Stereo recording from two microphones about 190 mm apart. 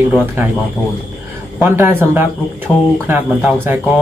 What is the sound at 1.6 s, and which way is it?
Speech, 15° right (ahead or behind).